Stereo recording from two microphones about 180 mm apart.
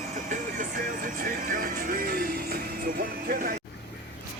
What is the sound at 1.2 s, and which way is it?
Music, 50° right (ahead or behind).